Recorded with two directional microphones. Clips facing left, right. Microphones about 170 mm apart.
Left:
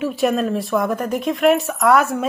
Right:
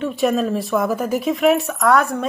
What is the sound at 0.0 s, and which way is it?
Speech, centre (ahead or behind).